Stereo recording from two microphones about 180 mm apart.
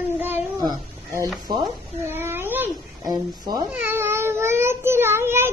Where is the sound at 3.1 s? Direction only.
20° right (ahead or behind).